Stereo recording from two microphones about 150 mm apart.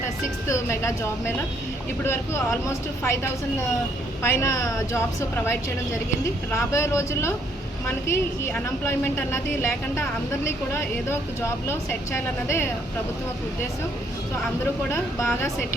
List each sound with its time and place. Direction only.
0.4 s speech: 20° left (ahead or behind)
2.0 s speech: 20° left (ahead or behind)
4.2 s speech: 15° left (ahead or behind)
6.5 s a woman's voice: 20° left (ahead or behind)
15.2 s speech: 20° left (ahead or behind)